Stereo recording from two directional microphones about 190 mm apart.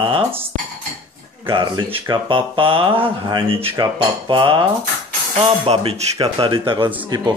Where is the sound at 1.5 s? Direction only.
25° right (ahead or behind).